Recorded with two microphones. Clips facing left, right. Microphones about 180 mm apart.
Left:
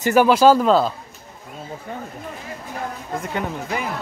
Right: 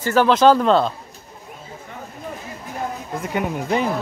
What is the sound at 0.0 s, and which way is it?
Speech, 10° left (ahead or behind).